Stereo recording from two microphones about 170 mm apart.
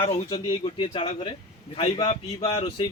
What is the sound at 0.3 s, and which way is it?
A man's voice, 25° left (ahead or behind).